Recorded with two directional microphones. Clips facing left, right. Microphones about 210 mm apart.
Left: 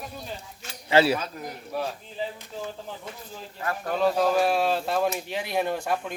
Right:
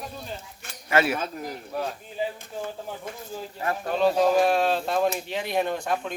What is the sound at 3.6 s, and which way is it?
Speech, 25° right (ahead or behind).